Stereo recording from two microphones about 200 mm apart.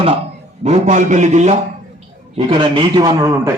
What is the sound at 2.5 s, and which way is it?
A man's voice, 25° right (ahead or behind).